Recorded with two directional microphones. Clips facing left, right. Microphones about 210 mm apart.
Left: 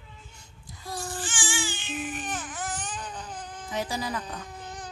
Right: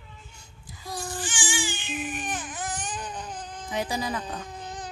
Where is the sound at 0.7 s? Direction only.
Centre (ahead or behind).